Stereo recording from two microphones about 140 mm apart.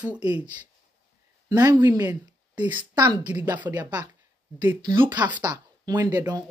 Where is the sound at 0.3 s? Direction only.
10° right (ahead or behind).